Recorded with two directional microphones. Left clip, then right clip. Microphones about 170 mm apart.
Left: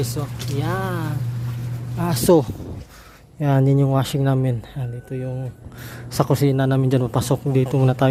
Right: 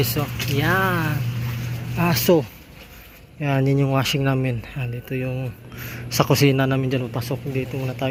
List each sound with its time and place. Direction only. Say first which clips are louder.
0.0 s speech: right 4 dB; centre (ahead or behind)
2.2 s a man's voice: left 5 dB; 35° left (ahead or behind); by 6.7 s 15° left (ahead or behind)
6.7 s a man's voice: left 3 dB; 30° left (ahead or behind); by 8.0 s 50° left (ahead or behind)